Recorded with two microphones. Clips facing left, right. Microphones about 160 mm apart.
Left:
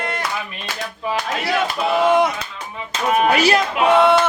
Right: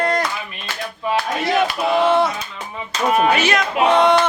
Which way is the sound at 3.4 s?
35° left (ahead or behind).